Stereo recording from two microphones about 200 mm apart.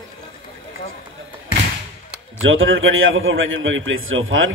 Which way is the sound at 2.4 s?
80° right.